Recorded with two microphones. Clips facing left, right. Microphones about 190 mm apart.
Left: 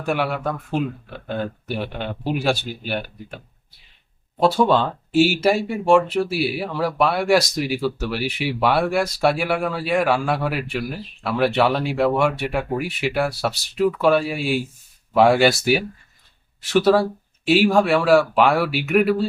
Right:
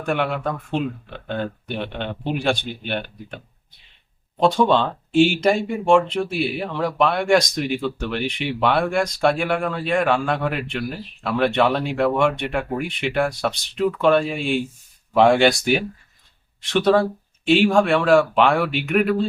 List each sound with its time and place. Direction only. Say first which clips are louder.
0.0 s speech: even; 5° left (ahead or behind)